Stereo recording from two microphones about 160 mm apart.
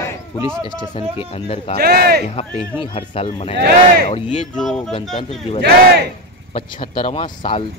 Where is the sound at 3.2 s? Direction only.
45° left (ahead or behind).